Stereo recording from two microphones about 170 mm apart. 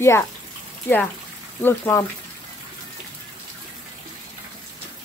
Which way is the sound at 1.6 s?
15° left (ahead or behind).